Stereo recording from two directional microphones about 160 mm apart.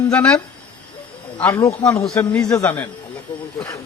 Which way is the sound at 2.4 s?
20° left (ahead or behind).